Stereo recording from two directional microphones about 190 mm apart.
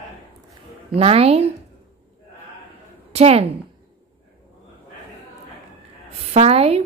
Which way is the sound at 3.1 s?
35° right (ahead or behind).